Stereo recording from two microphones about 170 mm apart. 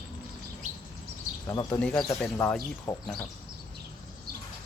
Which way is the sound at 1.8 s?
5° left (ahead or behind).